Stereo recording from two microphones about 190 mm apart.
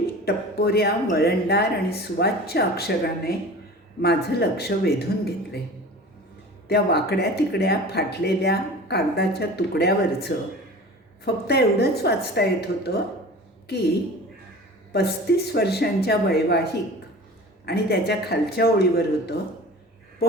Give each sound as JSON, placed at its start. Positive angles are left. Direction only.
{"t": 0.3, "sound": "speech", "side_deg": 55}
{"t": 6.7, "sound": "speech", "side_deg": 60}
{"t": 11.4, "sound": "speech", "side_deg": 55}
{"t": 14.9, "sound": "speech", "side_deg": 60}
{"t": 17.7, "sound": "speech", "side_deg": 60}